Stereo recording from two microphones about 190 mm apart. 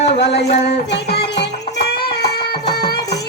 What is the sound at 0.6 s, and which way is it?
Music, 60° left (ahead or behind).